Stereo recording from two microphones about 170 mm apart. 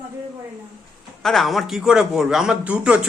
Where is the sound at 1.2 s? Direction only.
Centre (ahead or behind).